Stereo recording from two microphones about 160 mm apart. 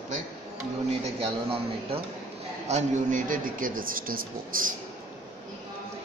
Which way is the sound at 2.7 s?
50° right (ahead or behind).